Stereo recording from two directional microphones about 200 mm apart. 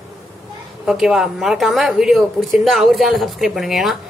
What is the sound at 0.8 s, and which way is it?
Speech, 5° right (ahead or behind).